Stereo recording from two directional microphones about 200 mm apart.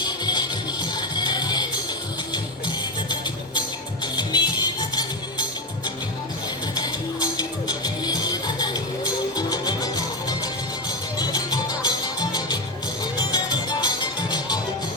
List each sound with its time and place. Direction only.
0.0 s music: 20° left (ahead or behind)
4.0 s music: 20° left (ahead or behind)
6.7 s music: 20° left (ahead or behind)